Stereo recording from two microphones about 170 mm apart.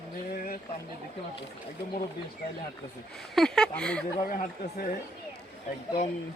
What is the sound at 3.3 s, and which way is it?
Speech, 5° left (ahead or behind).